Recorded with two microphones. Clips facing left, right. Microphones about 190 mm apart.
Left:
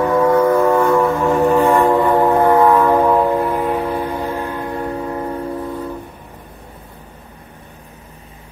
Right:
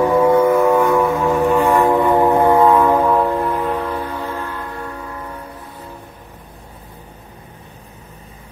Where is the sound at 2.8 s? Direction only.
10° left (ahead or behind); by 5.2 s 30° left (ahead or behind).